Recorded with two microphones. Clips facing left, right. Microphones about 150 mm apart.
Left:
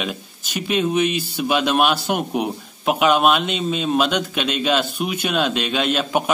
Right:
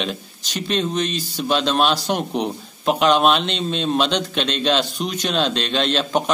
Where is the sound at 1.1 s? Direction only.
55° left (ahead or behind).